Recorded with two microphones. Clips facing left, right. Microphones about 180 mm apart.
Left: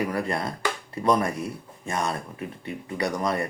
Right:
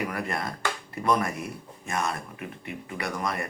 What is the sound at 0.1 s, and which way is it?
Speech, 30° left (ahead or behind).